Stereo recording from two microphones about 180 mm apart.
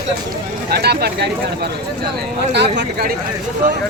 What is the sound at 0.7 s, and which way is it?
Speech, 65° right (ahead or behind).